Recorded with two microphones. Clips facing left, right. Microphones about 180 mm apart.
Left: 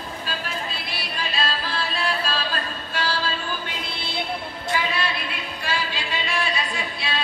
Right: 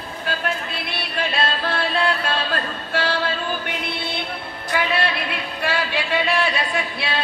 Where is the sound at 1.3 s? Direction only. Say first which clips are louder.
Right 3 dB; 60° right (ahead or behind).